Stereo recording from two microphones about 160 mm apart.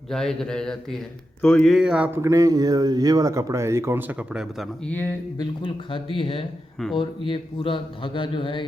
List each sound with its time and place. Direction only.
0.1 s speech: 5° left (ahead or behind)
4.9 s speech: 10° left (ahead or behind)
5.4 s a man's voice: 30° left (ahead or behind)